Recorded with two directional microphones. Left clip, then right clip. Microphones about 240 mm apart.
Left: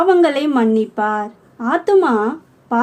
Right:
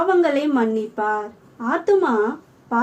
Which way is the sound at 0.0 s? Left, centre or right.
Left.